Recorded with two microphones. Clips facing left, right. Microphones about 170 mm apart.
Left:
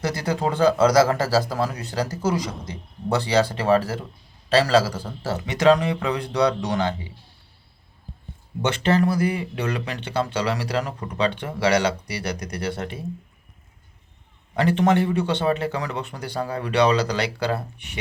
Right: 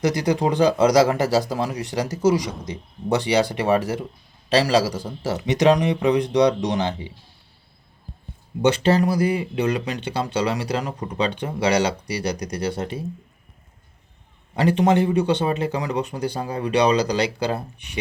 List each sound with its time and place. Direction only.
0.0 s a man's voice: 15° right (ahead or behind)
8.6 s speech: 20° right (ahead or behind)
14.5 s speech: 15° right (ahead or behind)